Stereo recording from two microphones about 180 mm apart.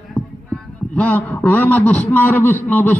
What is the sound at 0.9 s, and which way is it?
A man's voice, 10° left (ahead or behind).